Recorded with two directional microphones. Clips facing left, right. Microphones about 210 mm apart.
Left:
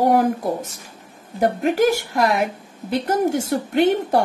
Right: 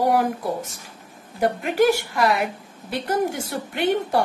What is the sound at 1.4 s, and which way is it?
A woman's voice, 45° left (ahead or behind).